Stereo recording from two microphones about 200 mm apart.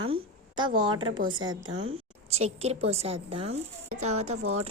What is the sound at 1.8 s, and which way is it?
A woman's voice, 30° right (ahead or behind).